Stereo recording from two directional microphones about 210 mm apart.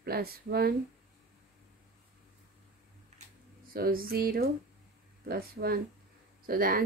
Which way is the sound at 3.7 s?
45° right (ahead or behind).